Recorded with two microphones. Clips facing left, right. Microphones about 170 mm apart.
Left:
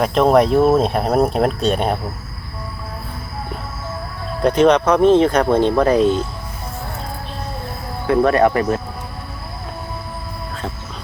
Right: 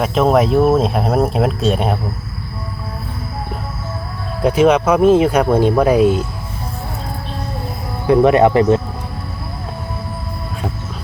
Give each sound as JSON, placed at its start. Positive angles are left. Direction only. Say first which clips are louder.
{"t": 0.0, "sound": "speech", "louder": "even", "side_deg": 0}
{"t": 4.4, "sound": "speech", "louder": "right 1 dB", "side_deg": -5}
{"t": 8.0, "sound": "speech", "louder": "right 3 dB", "side_deg": -20}